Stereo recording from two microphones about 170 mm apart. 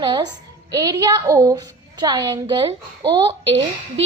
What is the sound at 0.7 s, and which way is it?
A woman's voice, 20° right (ahead or behind).